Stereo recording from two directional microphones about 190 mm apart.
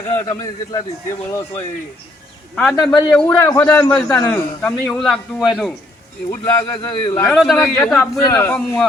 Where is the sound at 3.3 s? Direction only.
20° left (ahead or behind).